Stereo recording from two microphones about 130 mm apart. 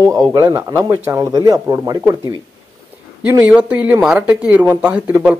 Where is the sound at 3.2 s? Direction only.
15° right (ahead or behind).